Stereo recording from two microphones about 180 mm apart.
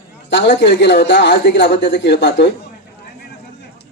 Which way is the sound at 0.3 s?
80° left.